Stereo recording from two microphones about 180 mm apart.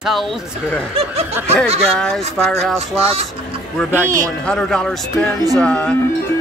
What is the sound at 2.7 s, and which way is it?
Speech, 35° right (ahead or behind).